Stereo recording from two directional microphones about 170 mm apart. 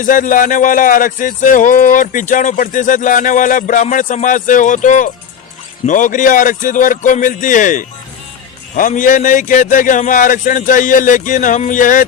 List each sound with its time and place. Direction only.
0.0 s speech: 50° left (ahead or behind)